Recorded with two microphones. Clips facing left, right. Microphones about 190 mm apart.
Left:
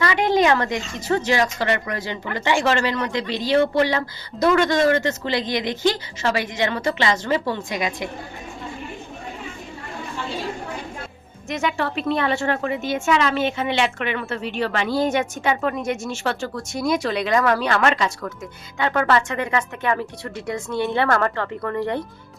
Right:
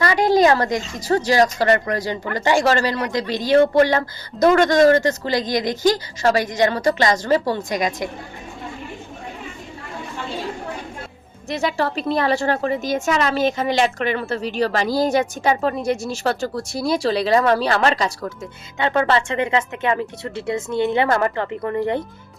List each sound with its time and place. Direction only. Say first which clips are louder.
0.0 s a woman's voice: right 3 dB; 40° right (ahead or behind)
11.4 s a woman's voice: right 2 dB; 35° right (ahead or behind)
18.8 s speech: right 1 dB; 25° right (ahead or behind)